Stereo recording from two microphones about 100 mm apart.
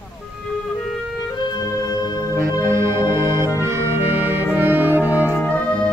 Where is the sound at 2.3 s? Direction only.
30° right (ahead or behind).